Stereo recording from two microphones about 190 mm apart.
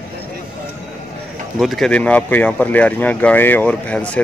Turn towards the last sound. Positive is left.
turn(degrees=5)  # may be behind; listen again after turning